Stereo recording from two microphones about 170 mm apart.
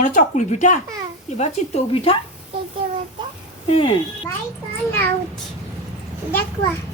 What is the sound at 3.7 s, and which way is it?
Speech, 35° left (ahead or behind).